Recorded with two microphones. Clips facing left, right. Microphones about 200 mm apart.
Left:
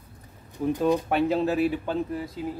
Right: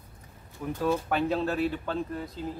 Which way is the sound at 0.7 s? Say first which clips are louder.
Left 3 dB; 15° left (ahead or behind).